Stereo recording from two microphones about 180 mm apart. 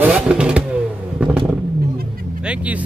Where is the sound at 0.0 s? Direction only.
5° right (ahead or behind).